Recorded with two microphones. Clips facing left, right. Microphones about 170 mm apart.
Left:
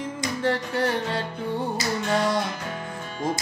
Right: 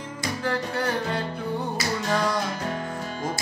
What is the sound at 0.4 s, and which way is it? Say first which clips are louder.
Music: left 3 dB; 25° left (ahead or behind).